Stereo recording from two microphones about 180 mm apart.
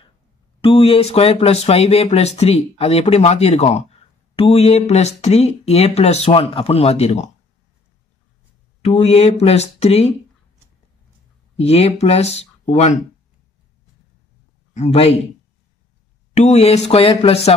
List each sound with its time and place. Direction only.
0.6 s speech: 30° left (ahead or behind)
8.8 s speech: 35° left (ahead or behind)
11.5 s speech: 35° left (ahead or behind)
14.7 s a man's voice: 35° left (ahead or behind)
16.3 s speech: 35° left (ahead or behind)